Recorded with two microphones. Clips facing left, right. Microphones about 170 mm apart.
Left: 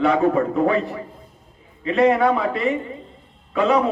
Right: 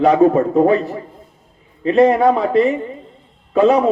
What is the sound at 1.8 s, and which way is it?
A man's voice, 35° right (ahead or behind).